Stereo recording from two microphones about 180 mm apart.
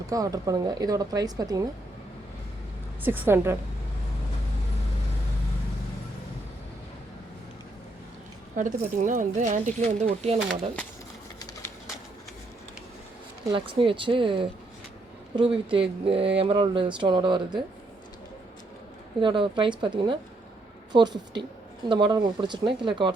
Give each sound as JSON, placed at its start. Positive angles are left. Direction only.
{"t": 0.1, "sound": "speech", "side_deg": -20}
{"t": 3.0, "sound": "a woman's voice", "side_deg": -10}
{"t": 8.5, "sound": "speech", "side_deg": -45}
{"t": 10.3, "sound": "speech", "side_deg": 5}
{"t": 13.5, "sound": "speech", "side_deg": -30}
{"t": 19.2, "sound": "speech", "side_deg": -30}